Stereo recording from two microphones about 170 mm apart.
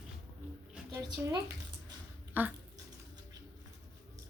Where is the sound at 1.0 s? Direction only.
25° right (ahead or behind).